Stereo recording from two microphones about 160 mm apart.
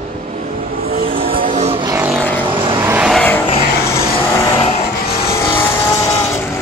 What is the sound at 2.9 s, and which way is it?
Vehicle, 5° right (ahead or behind).